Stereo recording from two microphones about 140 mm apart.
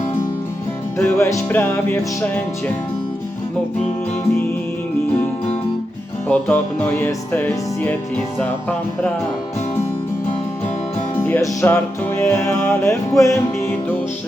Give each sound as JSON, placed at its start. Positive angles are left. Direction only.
{"t": 0.9, "sound": "music", "side_deg": 15}
{"t": 6.2, "sound": "music", "side_deg": 10}
{"t": 11.2, "sound": "music", "side_deg": 15}